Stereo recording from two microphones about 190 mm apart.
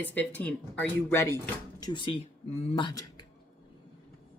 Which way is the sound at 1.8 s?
20° left (ahead or behind).